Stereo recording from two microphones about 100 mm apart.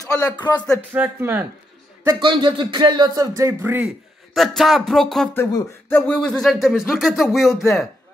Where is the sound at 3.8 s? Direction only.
Centre (ahead or behind).